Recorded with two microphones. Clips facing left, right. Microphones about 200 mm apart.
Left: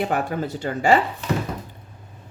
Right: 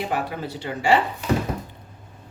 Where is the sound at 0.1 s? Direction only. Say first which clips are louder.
Left 3 dB; 45° left (ahead or behind).